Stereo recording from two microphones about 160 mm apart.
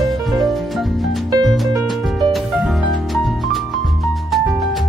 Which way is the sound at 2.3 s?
Centre (ahead or behind).